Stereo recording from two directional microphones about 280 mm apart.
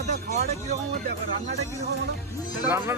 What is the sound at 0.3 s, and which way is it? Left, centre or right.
Speech, right.